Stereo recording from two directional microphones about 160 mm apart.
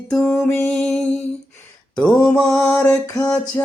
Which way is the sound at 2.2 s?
5° left (ahead or behind).